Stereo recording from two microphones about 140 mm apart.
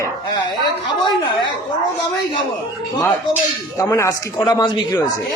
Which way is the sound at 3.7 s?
20° left (ahead or behind).